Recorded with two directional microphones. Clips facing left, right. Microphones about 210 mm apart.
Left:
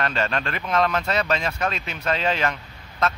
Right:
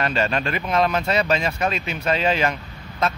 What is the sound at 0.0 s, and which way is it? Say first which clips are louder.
Speech: right 3 dB; 5° right (ahead or behind).